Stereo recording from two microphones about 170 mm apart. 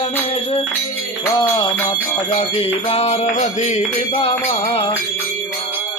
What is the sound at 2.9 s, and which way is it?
Music, 40° left (ahead or behind).